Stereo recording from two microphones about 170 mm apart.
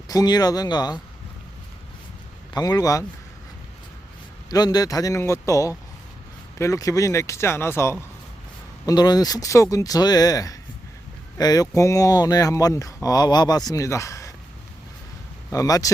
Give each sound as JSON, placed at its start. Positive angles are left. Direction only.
{"t": 0.1, "sound": "speech", "side_deg": 20}
{"t": 2.5, "sound": "speech", "side_deg": 20}
{"t": 4.4, "sound": "speech", "side_deg": 25}
{"t": 15.4, "sound": "speech", "side_deg": 20}